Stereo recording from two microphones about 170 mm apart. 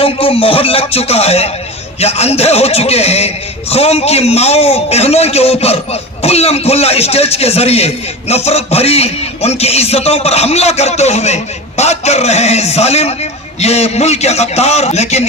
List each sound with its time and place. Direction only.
0.0 s speech: 35° left (ahead or behind)